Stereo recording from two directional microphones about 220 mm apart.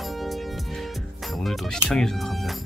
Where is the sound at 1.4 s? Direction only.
Centre (ahead or behind).